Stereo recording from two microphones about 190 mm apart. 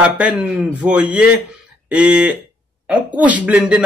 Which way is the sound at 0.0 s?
5° right (ahead or behind).